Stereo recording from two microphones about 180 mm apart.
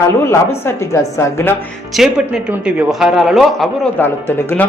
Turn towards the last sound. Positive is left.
turn(degrees=10)  # may be behind; listen again after turning